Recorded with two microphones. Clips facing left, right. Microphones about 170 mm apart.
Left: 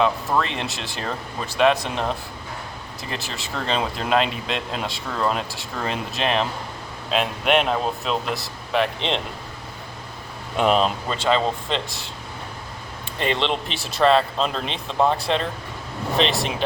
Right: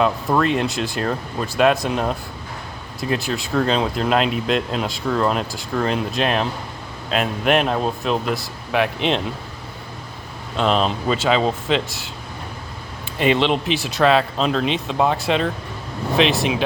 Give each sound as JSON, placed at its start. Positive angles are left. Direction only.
{"t": 0.0, "sound": "speech", "side_deg": 0}
{"t": 10.6, "sound": "speech", "side_deg": 5}
{"t": 13.1, "sound": "speech", "side_deg": -5}